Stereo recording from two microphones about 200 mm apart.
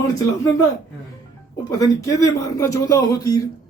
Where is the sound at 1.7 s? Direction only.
15° left (ahead or behind).